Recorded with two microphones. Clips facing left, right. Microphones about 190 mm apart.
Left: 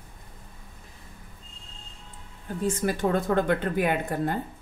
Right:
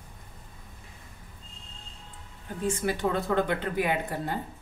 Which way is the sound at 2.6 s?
45° left (ahead or behind).